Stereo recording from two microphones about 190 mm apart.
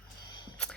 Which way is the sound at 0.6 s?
5° left (ahead or behind).